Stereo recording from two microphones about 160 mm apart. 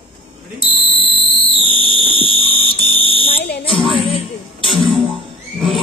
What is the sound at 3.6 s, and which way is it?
Music, 35° left (ahead or behind).